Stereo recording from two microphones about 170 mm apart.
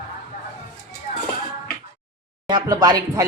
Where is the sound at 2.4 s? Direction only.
20° right (ahead or behind).